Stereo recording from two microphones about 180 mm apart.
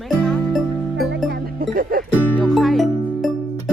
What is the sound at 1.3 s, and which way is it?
Music, 55° right (ahead or behind).